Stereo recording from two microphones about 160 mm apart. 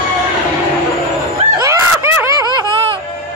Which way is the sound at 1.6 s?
20° right (ahead or behind).